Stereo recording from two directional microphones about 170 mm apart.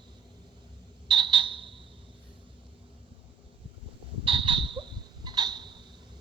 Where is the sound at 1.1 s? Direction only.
30° right (ahead or behind).